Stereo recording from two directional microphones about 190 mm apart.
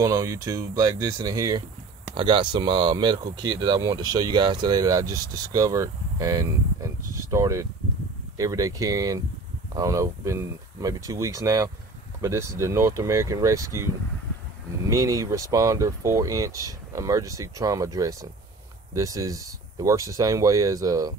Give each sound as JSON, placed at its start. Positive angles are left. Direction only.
{"t": 0.0, "sound": "speech", "side_deg": -20}
{"t": 14.9, "sound": "speech", "side_deg": -20}